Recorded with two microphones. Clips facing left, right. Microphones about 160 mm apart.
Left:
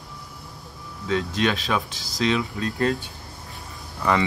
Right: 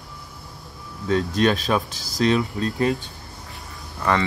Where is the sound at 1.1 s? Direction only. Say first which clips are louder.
Right 4 dB; 40° right (ahead or behind).